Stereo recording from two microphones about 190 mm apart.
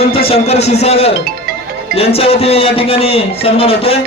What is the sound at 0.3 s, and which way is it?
Speech, 35° left (ahead or behind).